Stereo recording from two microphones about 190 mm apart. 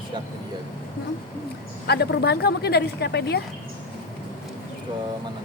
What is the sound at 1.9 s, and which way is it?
Speech, 60° left (ahead or behind).